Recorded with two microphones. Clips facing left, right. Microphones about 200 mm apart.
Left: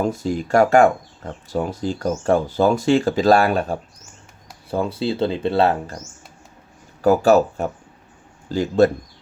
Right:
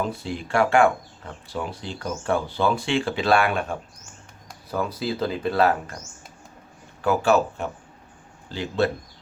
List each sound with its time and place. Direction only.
0.0 s speech: 45° left (ahead or behind)
7.0 s speech: 40° left (ahead or behind)